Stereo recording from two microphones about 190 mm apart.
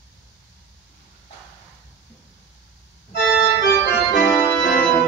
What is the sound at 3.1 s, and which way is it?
Organ, 65° left (ahead or behind).